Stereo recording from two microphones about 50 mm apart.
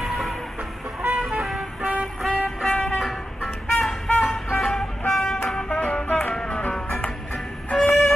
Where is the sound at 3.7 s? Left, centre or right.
Centre.